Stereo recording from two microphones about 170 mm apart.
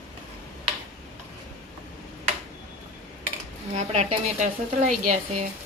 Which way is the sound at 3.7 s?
45° right (ahead or behind).